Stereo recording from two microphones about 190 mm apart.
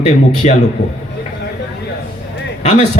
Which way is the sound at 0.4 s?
35° left (ahead or behind).